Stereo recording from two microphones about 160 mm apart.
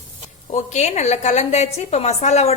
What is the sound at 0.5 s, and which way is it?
A woman's voice, 45° left (ahead or behind).